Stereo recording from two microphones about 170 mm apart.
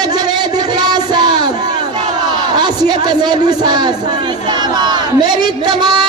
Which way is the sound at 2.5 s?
25° right (ahead or behind).